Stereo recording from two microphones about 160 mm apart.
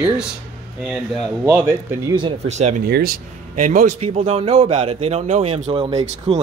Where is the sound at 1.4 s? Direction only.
10° right (ahead or behind).